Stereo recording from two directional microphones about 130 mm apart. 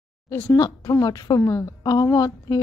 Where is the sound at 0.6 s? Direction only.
30° left (ahead or behind).